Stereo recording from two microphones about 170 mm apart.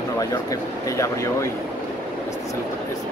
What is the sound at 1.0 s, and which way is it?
Speech, 20° left (ahead or behind).